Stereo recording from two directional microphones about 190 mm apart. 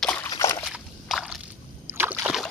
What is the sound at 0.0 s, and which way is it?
Slosh, 5° left (ahead or behind).